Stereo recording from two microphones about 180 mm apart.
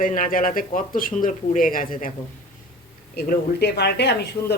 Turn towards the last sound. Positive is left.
turn(degrees=70)  # may be behind; listen again after turning